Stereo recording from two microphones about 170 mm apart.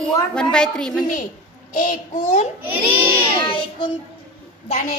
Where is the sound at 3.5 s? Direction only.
30° left (ahead or behind).